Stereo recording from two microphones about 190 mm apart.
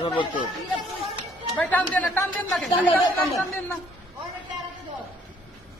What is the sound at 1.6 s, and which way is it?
Speech, 10° left (ahead or behind).